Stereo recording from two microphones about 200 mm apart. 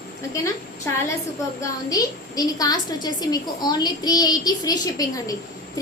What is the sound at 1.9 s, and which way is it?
A woman's voice, 20° left (ahead or behind).